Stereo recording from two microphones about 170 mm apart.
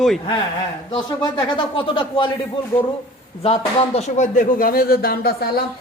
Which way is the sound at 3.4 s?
35° left (ahead or behind).